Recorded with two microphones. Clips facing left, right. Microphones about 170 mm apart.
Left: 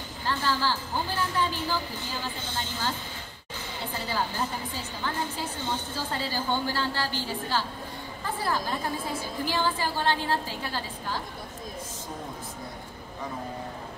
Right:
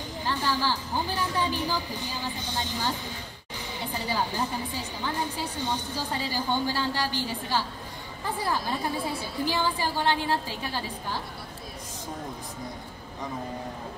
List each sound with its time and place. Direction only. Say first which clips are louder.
0.2 s a woman's voice: even; 15° right (ahead or behind)
9.4 s a woman's voice: right 1 dB; 15° right (ahead or behind)